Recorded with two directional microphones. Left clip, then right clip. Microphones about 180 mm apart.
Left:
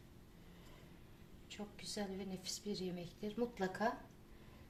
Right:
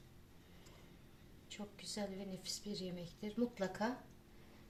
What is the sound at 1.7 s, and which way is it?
A woman's voice, 45° left (ahead or behind).